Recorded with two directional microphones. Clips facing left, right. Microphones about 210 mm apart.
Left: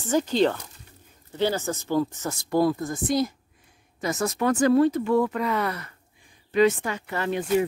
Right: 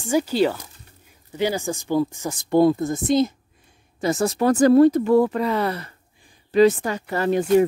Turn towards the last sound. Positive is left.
turn(degrees=-40)  # may be behind; listen again after turning